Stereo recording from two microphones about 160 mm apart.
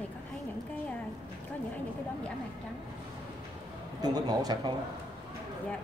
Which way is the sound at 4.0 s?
25° right (ahead or behind).